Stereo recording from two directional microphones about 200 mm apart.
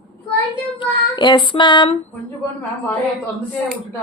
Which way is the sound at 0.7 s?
25° left (ahead or behind).